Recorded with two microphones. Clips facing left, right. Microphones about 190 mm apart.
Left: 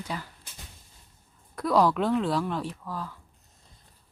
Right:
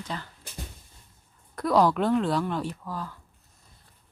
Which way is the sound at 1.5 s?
Centre (ahead or behind).